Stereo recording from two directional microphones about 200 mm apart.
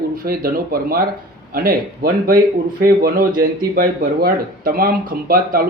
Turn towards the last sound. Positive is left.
turn(degrees=-45)  # may be behind; listen again after turning